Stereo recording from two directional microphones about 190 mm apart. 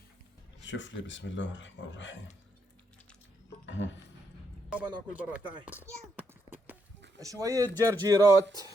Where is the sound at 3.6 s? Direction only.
75° left (ahead or behind).